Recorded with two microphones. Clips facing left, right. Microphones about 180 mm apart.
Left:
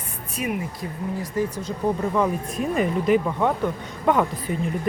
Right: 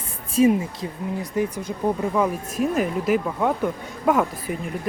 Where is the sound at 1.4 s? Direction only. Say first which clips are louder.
Right 1 dB; 10° right (ahead or behind).